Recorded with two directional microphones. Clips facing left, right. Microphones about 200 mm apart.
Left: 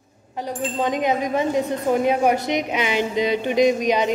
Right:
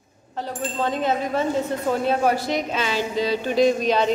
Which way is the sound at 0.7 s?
15° left (ahead or behind).